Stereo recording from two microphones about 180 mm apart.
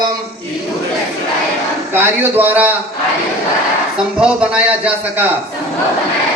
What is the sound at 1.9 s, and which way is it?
Speech, 10° right (ahead or behind).